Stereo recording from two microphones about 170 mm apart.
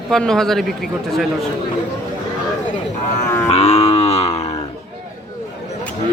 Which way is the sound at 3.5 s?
35° left (ahead or behind).